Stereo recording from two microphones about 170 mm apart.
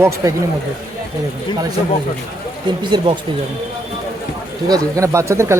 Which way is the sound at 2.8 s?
25° right (ahead or behind).